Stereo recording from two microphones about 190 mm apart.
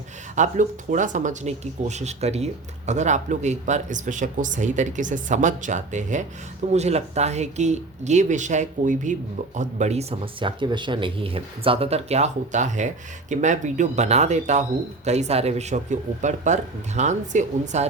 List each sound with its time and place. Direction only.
0.3 s speech: 40° right (ahead or behind)